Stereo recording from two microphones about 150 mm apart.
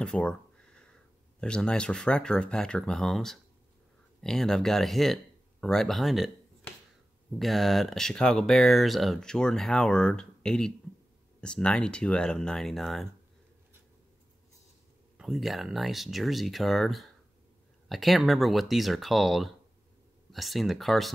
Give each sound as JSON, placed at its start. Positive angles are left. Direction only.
{"t": 0.0, "sound": "a sound", "side_deg": 5}
{"t": 1.4, "sound": "speech", "side_deg": 5}
{"t": 7.3, "sound": "speech", "side_deg": 0}
{"t": 15.1, "sound": "speech", "side_deg": 0}